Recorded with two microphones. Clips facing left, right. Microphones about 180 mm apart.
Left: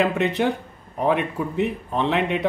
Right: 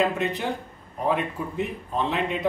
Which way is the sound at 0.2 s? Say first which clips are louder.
Left 6 dB; 70° left (ahead or behind).